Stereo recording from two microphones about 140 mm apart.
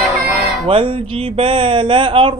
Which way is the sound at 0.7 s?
35° right (ahead or behind).